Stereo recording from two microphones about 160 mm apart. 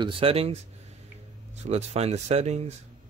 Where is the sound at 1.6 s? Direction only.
40° right (ahead or behind).